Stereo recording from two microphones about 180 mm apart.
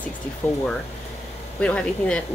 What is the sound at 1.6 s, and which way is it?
Speech, 5° left (ahead or behind).